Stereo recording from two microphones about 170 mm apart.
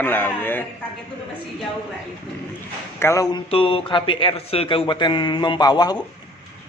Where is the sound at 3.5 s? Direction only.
35° left (ahead or behind).